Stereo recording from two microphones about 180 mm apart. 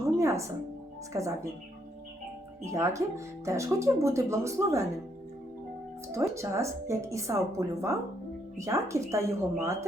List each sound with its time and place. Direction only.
0.2 s a woman's voice: 15° right (ahead or behind)
2.6 s a woman's voice: 15° right (ahead or behind)
6.1 s a woman's voice: 15° right (ahead or behind)